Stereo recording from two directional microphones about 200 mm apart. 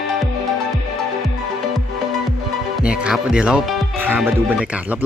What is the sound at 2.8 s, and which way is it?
A man's voice, 5° right (ahead or behind).